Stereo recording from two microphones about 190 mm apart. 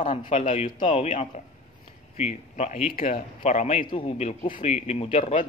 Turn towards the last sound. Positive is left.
turn(degrees=40)  # may be behind; listen again after turning